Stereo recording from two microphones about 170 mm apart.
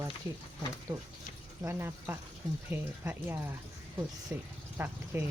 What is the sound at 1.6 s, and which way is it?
Speech, 15° right (ahead or behind).